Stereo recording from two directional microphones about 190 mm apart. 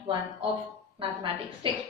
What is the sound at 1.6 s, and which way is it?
Speech, 25° right (ahead or behind).